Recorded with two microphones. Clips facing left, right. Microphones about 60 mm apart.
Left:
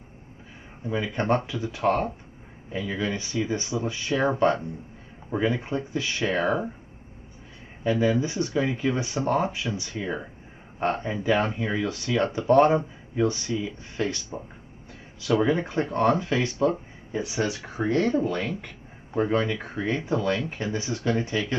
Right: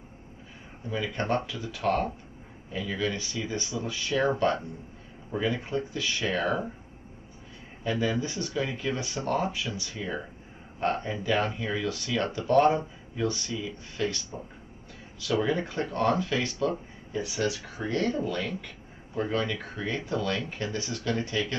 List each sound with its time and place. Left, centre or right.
0.8 s speech: left
7.8 s speech: left
15.4 s speech: left